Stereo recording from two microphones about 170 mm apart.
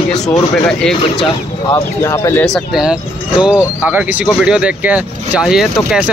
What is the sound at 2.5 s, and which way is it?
Speech, 5° right (ahead or behind).